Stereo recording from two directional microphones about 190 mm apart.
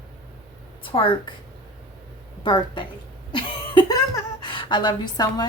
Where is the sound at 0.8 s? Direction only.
25° left (ahead or behind).